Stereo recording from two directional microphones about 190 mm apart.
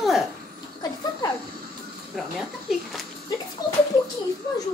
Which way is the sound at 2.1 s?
Centre (ahead or behind).